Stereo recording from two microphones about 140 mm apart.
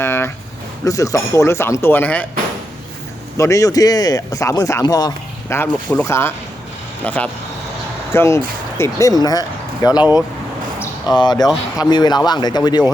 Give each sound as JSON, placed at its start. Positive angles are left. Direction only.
{"t": 0.0, "sound": "a sound", "side_deg": 15}
{"t": 0.9, "sound": "speech", "side_deg": 25}
{"t": 3.3, "sound": "speech", "side_deg": 20}
{"t": 5.5, "sound": "speech", "side_deg": 15}
{"t": 10.0, "sound": "speech", "side_deg": -10}
{"t": 11.1, "sound": "speech", "side_deg": 30}